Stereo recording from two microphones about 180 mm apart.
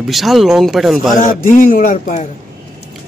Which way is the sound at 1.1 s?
45° left (ahead or behind).